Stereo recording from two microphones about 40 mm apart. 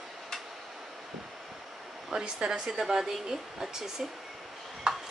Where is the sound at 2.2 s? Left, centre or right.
Right.